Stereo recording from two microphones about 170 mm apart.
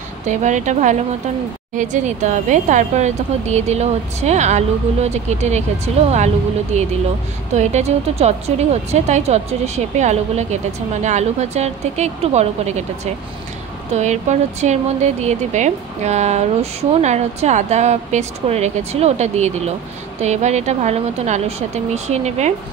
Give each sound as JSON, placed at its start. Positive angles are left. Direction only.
{"t": 0.3, "sound": "speech", "side_deg": -45}